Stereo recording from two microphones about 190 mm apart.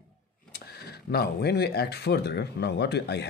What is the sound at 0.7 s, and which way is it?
Speech, 55° left (ahead or behind).